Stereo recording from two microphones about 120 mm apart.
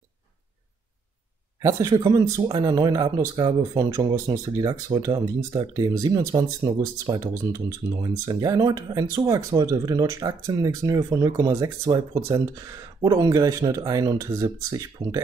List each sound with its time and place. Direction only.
1.6 s speech: 30° right (ahead or behind)